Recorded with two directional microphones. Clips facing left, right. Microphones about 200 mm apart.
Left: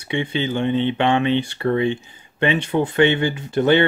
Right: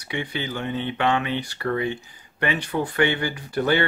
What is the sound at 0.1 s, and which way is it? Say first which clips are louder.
Speech: left 7 dB; 25° left (ahead or behind).